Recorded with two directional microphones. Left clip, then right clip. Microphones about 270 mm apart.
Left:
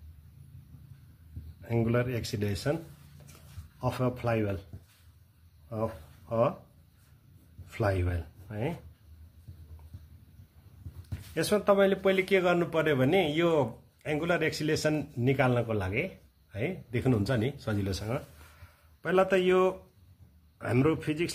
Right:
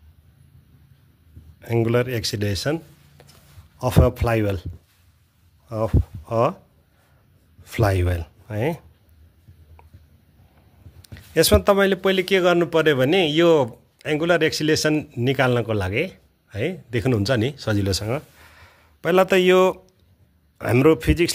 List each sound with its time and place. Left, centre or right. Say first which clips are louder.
1.6 s speech: right 9 dB; right
3.8 s speech: right 10 dB; right
5.7 s speech: right 9 dB; right
7.7 s speech: right 9 dB; right
11.3 s speech: right 9 dB; right